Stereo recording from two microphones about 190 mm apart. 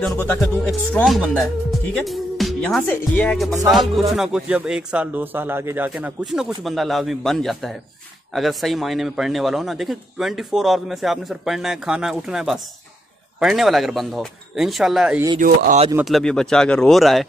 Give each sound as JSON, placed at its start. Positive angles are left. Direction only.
{"t": 0.0, "sound": "speech", "side_deg": 5}
{"t": 1.7, "sound": "music", "side_deg": 0}
{"t": 2.9, "sound": "speech", "side_deg": 5}
{"t": 15.3, "sound": "speech", "side_deg": -45}
{"t": 16.0, "sound": "speech", "side_deg": 0}